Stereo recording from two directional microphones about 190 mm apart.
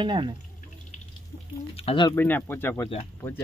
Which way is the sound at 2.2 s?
10° left (ahead or behind).